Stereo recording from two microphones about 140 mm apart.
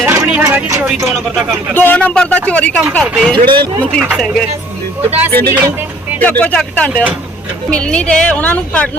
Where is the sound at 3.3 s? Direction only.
35° right (ahead or behind).